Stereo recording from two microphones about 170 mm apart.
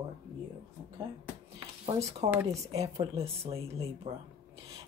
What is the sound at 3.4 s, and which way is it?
Speech, 15° right (ahead or behind).